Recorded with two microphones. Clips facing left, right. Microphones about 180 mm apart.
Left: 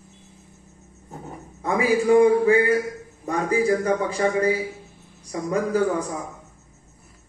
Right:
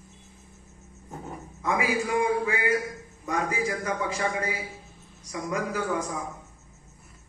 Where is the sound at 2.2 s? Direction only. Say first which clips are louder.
Left 9 dB; 35° left (ahead or behind).